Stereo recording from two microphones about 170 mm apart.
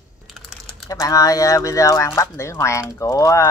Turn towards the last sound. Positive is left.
turn(degrees=15)  # may be behind; listen again after turning